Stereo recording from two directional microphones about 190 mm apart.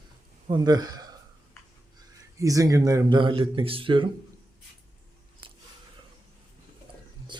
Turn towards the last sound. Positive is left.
turn(degrees=-25)  # may be behind; listen again after turning